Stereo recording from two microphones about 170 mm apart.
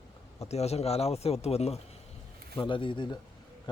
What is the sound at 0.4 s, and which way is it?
Speech, 40° left (ahead or behind).